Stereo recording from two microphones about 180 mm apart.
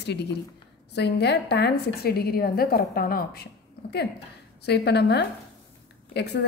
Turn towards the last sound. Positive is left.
turn(degrees=70)  # may be behind; listen again after turning